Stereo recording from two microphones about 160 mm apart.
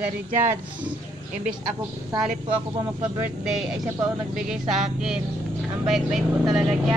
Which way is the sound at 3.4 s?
Centre (ahead or behind).